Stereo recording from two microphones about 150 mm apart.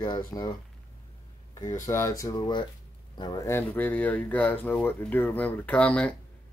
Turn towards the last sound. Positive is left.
turn(degrees=10)  # may be behind; listen again after turning